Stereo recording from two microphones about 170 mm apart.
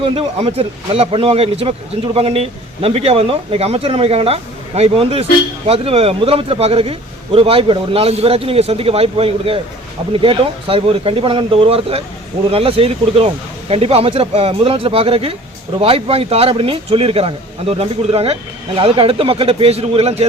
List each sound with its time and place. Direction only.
0.0 s speech: 35° right (ahead or behind)